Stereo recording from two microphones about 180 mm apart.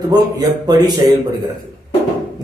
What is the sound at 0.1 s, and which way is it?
Speech, 20° right (ahead or behind).